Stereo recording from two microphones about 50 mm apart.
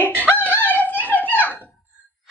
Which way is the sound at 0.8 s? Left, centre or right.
Left.